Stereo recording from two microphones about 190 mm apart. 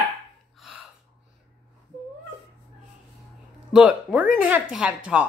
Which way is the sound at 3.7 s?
5° right (ahead or behind).